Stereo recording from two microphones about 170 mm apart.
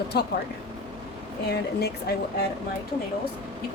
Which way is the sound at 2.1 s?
70° left (ahead or behind).